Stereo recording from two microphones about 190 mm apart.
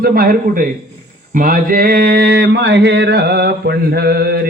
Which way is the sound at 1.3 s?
45° right (ahead or behind).